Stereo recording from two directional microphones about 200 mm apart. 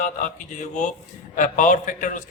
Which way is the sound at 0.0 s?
40° left (ahead or behind).